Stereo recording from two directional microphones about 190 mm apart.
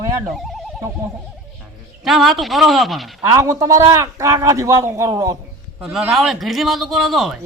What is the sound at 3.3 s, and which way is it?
A man's voice, 15° right (ahead or behind).